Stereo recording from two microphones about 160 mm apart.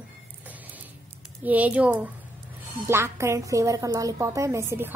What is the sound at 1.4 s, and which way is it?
A woman's voice, 10° right (ahead or behind).